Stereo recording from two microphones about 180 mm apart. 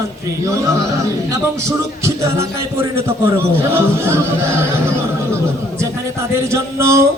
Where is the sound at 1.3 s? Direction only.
15° right (ahead or behind).